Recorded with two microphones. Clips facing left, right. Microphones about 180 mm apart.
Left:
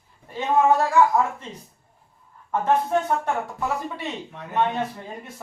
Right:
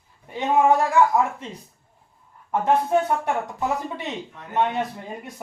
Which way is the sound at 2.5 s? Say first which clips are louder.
Right 1 dB; 15° right (ahead or behind).